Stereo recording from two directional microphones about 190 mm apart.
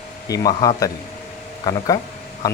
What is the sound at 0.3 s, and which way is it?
Speech, 20° left (ahead or behind).